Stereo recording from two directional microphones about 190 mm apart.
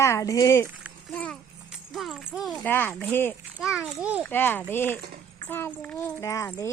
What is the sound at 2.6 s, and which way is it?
A child's voice, 10° left (ahead or behind).